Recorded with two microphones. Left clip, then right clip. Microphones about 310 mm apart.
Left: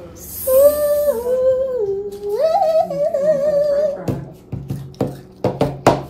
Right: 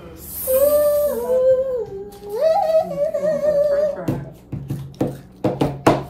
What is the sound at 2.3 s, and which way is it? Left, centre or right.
Music, centre.